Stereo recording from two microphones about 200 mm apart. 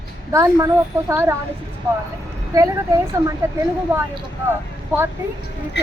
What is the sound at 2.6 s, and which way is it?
Speech, 15° right (ahead or behind).